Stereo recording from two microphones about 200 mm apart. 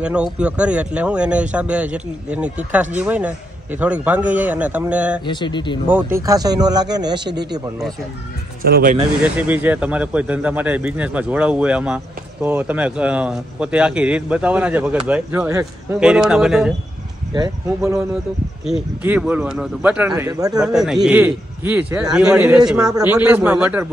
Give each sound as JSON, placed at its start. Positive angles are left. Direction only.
{"t": 0.0, "sound": "speech", "side_deg": -5}
{"t": 5.2, "sound": "speech", "side_deg": 25}
{"t": 5.9, "sound": "speech", "side_deg": -10}
{"t": 8.6, "sound": "speech", "side_deg": -50}
{"t": 9.2, "sound": "speech", "side_deg": -10}
{"t": 17.3, "sound": "speech", "side_deg": -20}
{"t": 18.7, "sound": "speech", "side_deg": -5}
{"t": 20.6, "sound": "a man's voice", "side_deg": 0}